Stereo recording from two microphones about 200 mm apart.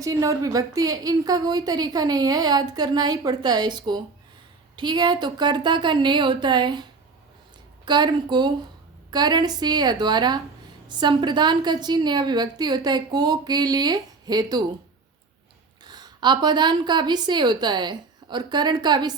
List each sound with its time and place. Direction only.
0.0 s a woman's voice: 15° right (ahead or behind)
7.9 s a woman's voice: 20° right (ahead or behind)
15.8 s a woman's voice: 20° right (ahead or behind)